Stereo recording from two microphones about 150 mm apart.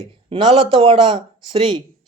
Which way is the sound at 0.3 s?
35° right (ahead or behind).